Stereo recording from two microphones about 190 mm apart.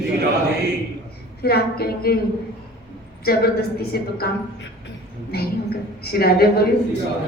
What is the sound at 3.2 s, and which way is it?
A woman's voice, 55° left (ahead or behind).